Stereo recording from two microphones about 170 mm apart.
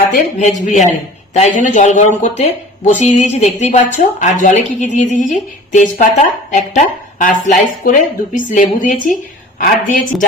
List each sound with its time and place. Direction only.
0.1 s speech: 45° left (ahead or behind)